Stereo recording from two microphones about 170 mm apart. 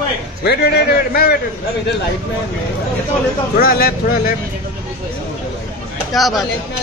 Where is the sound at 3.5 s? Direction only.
60° left (ahead or behind).